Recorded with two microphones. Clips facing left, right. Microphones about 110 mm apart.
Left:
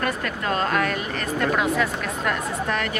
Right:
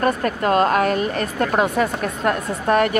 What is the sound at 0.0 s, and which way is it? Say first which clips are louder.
Speech: right 7 dB; 40° right (ahead or behind).